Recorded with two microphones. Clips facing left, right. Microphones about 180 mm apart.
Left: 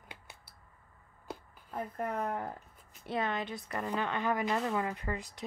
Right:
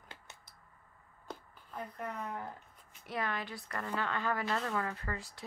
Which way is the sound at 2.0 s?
50° left (ahead or behind).